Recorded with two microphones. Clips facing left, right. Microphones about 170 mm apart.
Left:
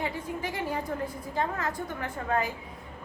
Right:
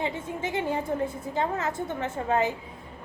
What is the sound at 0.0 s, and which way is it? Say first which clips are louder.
A woman's voice: right 2 dB; 25° right (ahead or behind).